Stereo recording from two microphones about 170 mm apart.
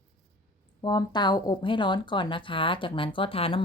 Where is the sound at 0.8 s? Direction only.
25° left (ahead or behind).